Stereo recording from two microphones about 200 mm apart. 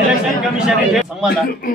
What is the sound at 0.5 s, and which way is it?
Speech, 5° right (ahead or behind).